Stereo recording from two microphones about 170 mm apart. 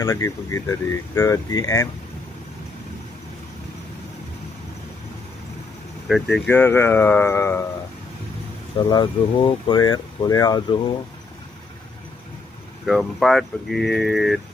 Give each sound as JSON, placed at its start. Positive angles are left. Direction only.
{"t": 0.0, "sound": "speech", "side_deg": 20}
{"t": 6.0, "sound": "speech", "side_deg": 0}
{"t": 8.7, "sound": "speech", "side_deg": 25}
{"t": 12.8, "sound": "speech", "side_deg": 0}